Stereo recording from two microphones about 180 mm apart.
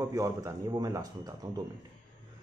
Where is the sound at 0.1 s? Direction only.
15° right (ahead or behind).